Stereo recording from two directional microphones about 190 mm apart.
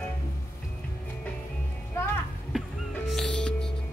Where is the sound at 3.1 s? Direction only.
Centre (ahead or behind).